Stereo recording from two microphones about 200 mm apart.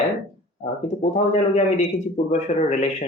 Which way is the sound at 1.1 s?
35° left (ahead or behind).